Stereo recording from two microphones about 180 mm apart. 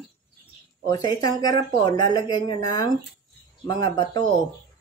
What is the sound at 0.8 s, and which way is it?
Speech, 20° left (ahead or behind).